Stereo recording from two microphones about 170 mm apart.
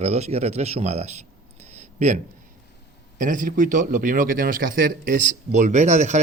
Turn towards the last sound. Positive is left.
turn(degrees=-40)  # may be behind; listen again after turning